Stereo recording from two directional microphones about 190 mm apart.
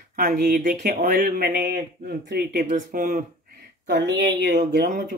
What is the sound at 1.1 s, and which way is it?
Speech, 55° right (ahead or behind).